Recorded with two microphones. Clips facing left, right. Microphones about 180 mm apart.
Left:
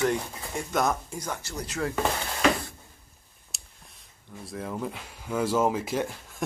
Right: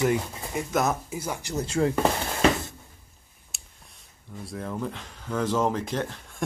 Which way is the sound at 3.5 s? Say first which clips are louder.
Even; centre (ahead or behind).